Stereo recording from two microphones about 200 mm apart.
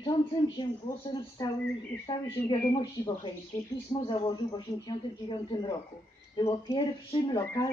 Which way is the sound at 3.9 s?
25° left (ahead or behind).